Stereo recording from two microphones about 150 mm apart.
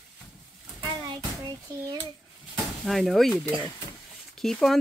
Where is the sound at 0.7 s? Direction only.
30° right (ahead or behind).